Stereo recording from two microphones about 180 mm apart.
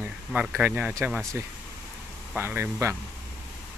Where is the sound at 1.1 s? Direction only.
5° left (ahead or behind).